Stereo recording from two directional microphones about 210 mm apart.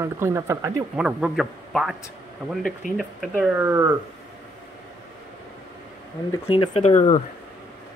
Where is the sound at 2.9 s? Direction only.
5° right (ahead or behind).